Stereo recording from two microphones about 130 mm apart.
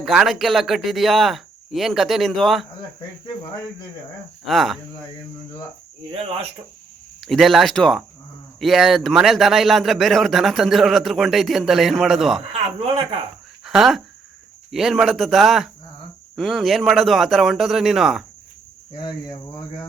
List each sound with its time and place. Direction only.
0.0 s speech: centre (ahead or behind)
4.4 s speech: centre (ahead or behind)
6.1 s speech: 45° right (ahead or behind)
7.2 s speech: centre (ahead or behind)
12.5 s speech: 50° right (ahead or behind)
13.7 s speech: centre (ahead or behind)
18.9 s speech: 35° left (ahead or behind)